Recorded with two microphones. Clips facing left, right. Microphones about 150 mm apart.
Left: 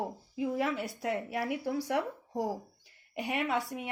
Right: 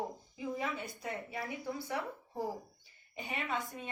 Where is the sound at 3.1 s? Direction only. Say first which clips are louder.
Left 6 dB; 85° left.